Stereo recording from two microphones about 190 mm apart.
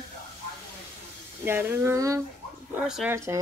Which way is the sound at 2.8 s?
5° right (ahead or behind).